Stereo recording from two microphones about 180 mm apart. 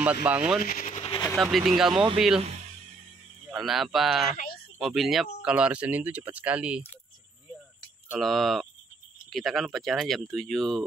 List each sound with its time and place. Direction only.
0.0 s speech: 10° right (ahead or behind)
0.6 s speech: 50° left (ahead or behind)
1.0 s vehicle: 25° left (ahead or behind)
1.3 s speech: centre (ahead or behind)
3.4 s speech: centre (ahead or behind)
8.2 s speech: centre (ahead or behind)